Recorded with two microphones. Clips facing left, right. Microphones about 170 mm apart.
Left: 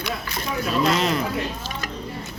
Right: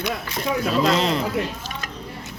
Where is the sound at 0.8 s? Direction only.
30° right (ahead or behind).